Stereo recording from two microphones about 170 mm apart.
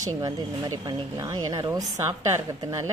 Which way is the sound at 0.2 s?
20° right (ahead or behind).